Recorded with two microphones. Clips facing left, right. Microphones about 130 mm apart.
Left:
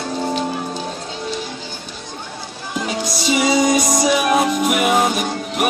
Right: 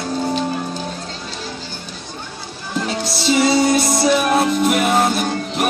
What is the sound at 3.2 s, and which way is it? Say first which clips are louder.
Music: right 1 dB; 10° left (ahead or behind).